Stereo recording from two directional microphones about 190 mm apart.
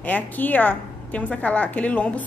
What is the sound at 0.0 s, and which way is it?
A woman's voice, 10° left (ahead or behind).